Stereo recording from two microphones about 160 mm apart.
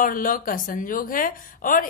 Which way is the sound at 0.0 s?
60° left (ahead or behind).